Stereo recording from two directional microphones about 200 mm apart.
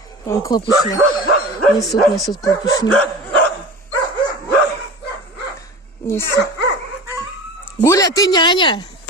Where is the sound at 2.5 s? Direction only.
20° left (ahead or behind).